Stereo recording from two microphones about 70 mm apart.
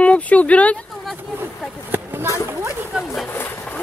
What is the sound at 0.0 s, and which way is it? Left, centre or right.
Speech, centre.